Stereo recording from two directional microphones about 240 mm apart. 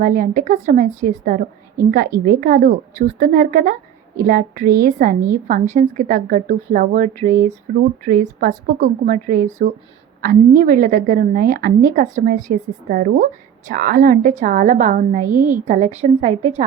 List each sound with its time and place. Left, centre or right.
0.0 s a woman's voice: right
15.3 s a woman's voice: centre
15.6 s a woman's voice: right